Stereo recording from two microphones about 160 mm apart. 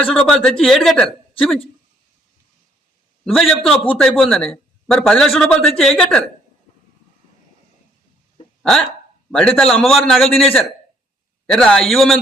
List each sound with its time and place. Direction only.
0.0 s a man's voice: 5° left (ahead or behind)
3.2 s a man's voice: centre (ahead or behind)
8.6 s a man's voice: 5° left (ahead or behind)